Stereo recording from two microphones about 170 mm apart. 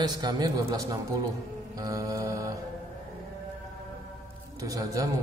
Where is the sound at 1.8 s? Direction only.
20° right (ahead or behind).